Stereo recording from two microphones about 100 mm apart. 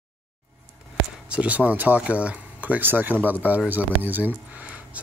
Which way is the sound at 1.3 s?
15° right (ahead or behind).